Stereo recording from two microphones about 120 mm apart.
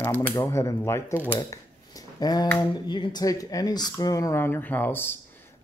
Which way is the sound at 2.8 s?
40° left (ahead or behind).